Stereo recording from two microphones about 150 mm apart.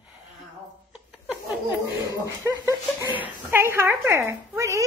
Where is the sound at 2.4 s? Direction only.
15° right (ahead or behind).